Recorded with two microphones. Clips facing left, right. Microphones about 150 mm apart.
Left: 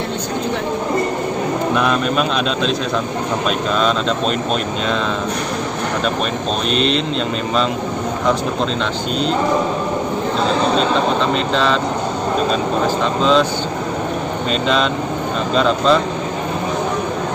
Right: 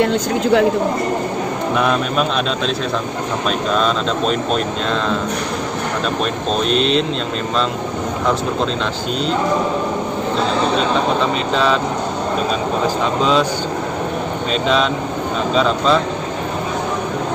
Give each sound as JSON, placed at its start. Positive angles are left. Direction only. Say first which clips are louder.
{"t": 1.8, "sound": "speech", "louder": "right 2 dB", "side_deg": 0}
{"t": 3.7, "sound": "speech", "louder": "even", "side_deg": 0}
{"t": 6.7, "sound": "speech", "louder": "even", "side_deg": 0}
{"t": 11.5, "sound": "speech", "louder": "right 2 dB", "side_deg": -5}
{"t": 13.2, "sound": "speech", "louder": "left 2 dB", "side_deg": -5}
{"t": 15.5, "sound": "speech", "louder": "left 1 dB", "side_deg": 0}